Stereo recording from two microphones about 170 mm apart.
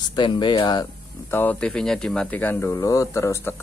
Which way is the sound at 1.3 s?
10° left (ahead or behind).